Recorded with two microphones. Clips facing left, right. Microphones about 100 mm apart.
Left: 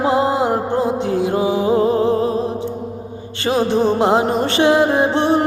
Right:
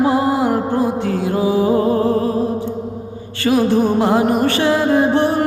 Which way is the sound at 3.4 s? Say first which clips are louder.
Right 1 dB; 25° left (ahead or behind).